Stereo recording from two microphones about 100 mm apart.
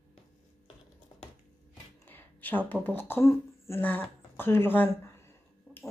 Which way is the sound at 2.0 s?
20° left (ahead or behind).